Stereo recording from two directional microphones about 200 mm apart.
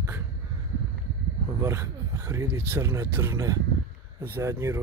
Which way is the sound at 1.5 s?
15° right (ahead or behind).